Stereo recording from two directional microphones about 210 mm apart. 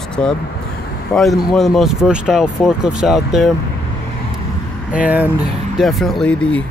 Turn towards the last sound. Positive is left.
turn(degrees=5)  # may be behind; listen again after turning